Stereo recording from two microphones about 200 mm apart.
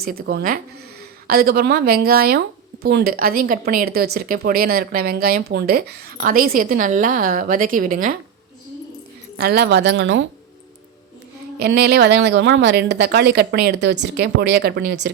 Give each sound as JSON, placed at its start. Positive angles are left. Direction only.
{"t": 0.0, "sound": "speech", "side_deg": -50}
{"t": 9.4, "sound": "speech", "side_deg": -55}
{"t": 11.6, "sound": "speech", "side_deg": -55}